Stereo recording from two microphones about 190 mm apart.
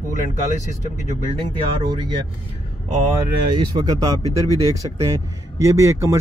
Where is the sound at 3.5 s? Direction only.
25° right (ahead or behind).